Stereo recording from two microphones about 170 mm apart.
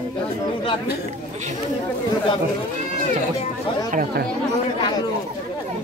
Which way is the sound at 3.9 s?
60° right (ahead or behind).